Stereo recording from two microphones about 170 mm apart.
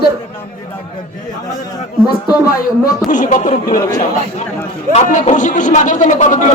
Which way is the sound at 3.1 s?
50° left (ahead or behind).